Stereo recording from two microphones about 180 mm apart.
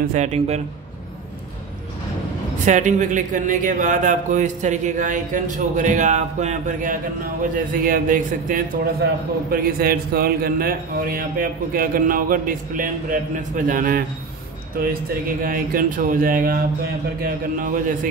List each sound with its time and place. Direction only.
0.1 s speech: 40° right (ahead or behind)
2.6 s a man's voice: 45° right (ahead or behind)